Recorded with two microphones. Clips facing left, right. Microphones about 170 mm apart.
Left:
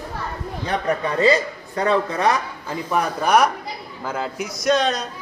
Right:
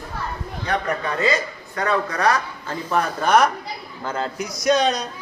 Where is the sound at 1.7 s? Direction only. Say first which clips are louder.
Left 2 dB; 30° left (ahead or behind).